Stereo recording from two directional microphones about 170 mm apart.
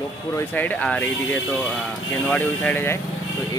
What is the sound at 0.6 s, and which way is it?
Speech, 10° left (ahead or behind).